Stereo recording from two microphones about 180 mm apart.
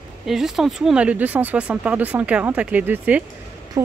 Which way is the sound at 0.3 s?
Centre (ahead or behind).